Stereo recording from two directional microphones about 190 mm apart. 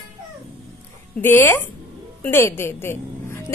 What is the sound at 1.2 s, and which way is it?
A woman's voice, 10° left (ahead or behind).